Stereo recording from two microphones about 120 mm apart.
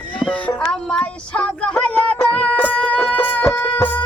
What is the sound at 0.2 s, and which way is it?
Music, 10° left (ahead or behind).